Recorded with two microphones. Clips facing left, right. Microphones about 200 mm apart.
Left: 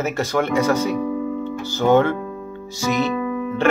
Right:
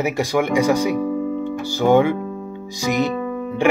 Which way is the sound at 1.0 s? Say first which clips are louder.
Right 1 dB; 45° right (ahead or behind).